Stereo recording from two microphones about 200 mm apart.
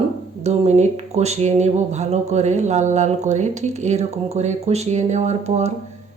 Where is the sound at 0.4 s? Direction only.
35° right (ahead or behind).